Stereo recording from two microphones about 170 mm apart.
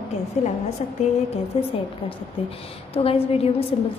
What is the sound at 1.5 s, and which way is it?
Speech, 35° left (ahead or behind).